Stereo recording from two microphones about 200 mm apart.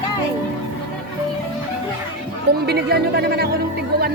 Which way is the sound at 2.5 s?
55° right (ahead or behind).